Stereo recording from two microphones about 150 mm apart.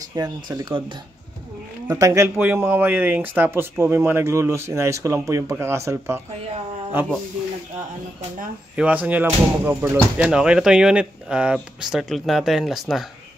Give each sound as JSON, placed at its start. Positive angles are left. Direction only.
{"t": 0.1, "sound": "speech", "side_deg": -25}
{"t": 1.9, "sound": "speech", "side_deg": -20}
{"t": 8.7, "sound": "speech", "side_deg": -10}